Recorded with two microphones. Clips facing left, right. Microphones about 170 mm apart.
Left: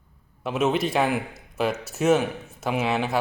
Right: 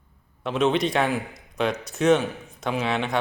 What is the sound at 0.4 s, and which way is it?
Speech, 5° left (ahead or behind).